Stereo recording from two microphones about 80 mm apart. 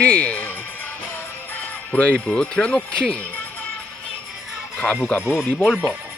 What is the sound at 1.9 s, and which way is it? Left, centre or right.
Speech, centre.